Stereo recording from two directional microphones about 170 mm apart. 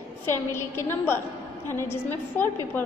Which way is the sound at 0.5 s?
15° left (ahead or behind).